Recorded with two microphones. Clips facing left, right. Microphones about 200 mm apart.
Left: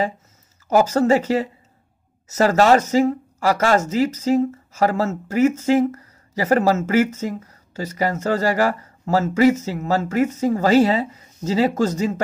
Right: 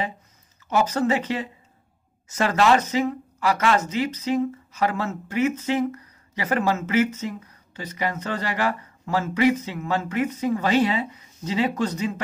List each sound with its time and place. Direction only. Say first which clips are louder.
0.7 s speech: left 6 dB; 40° left (ahead or behind)